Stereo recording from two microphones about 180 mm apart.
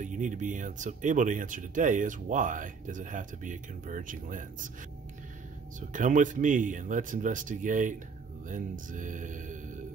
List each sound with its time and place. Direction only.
0.0 s speech: 45° right (ahead or behind)
5.8 s speech: 45° right (ahead or behind)